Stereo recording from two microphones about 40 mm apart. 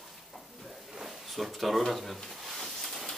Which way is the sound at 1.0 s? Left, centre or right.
Centre.